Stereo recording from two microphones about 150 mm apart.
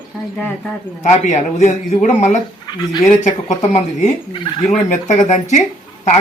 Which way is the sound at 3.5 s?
50° left (ahead or behind).